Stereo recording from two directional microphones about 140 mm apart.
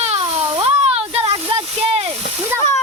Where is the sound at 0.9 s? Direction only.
45° right (ahead or behind).